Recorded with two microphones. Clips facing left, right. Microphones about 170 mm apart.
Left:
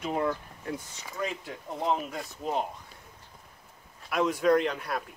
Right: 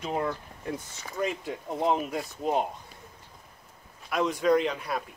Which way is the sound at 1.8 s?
15° right (ahead or behind).